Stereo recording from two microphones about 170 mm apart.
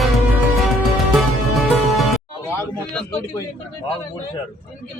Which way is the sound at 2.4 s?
10° left (ahead or behind).